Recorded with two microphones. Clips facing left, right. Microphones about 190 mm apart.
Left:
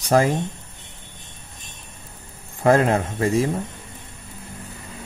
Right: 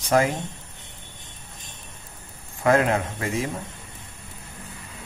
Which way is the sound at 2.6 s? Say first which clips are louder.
Left 3 dB; 30° left (ahead or behind).